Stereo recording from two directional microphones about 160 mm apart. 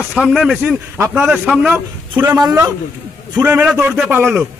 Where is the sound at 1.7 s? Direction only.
10° right (ahead or behind).